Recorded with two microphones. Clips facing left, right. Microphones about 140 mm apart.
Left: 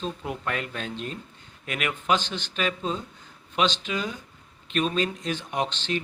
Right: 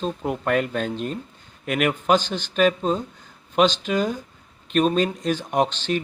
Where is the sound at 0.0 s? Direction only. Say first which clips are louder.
Right 6 dB; 50° right (ahead or behind).